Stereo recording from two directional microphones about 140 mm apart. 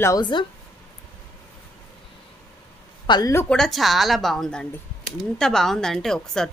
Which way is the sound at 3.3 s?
5° left (ahead or behind).